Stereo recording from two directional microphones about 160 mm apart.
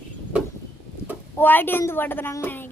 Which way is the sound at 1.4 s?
10° left (ahead or behind).